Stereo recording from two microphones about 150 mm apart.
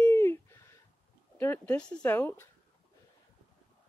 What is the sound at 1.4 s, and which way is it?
Speech, 10° left (ahead or behind).